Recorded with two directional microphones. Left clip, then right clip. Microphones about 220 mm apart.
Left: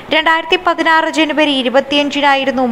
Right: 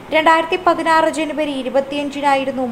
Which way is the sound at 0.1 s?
15° left (ahead or behind).